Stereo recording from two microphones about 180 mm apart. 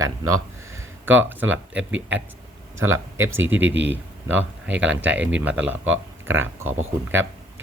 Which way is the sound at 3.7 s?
85° right.